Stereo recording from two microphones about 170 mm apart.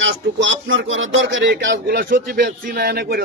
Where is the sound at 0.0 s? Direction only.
90° right.